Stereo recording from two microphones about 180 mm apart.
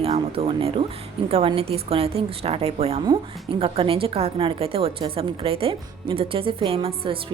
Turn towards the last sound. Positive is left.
turn(degrees=-30)  # may be behind; listen again after turning